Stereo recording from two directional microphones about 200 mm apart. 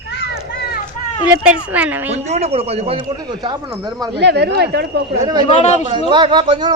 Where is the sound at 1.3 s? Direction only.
5° right (ahead or behind).